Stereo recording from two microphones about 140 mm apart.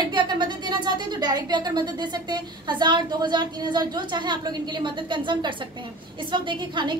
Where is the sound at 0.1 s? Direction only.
35° right (ahead or behind).